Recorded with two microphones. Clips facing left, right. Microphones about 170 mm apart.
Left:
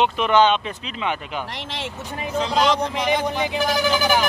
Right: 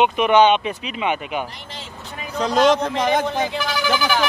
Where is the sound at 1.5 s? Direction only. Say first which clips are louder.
Left 6 dB; 90° left.